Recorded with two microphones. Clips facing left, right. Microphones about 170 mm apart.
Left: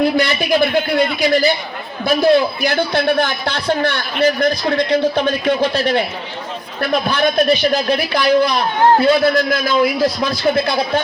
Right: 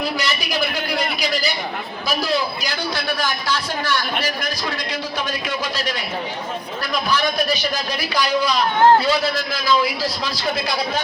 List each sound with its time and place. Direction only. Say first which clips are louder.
0.0 s a man's voice: left 8 dB; 55° left (ahead or behind)